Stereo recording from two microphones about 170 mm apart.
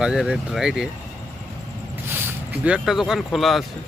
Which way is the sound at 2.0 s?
10° right (ahead or behind).